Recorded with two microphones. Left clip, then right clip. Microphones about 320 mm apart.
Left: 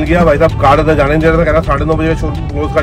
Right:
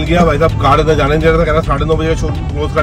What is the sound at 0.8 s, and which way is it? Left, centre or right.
Speech, left.